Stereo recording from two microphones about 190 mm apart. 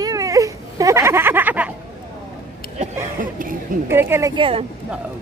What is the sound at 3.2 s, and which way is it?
Speech, 45° right (ahead or behind).